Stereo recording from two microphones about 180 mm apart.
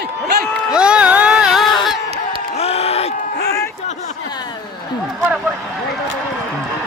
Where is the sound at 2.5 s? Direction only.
35° left (ahead or behind).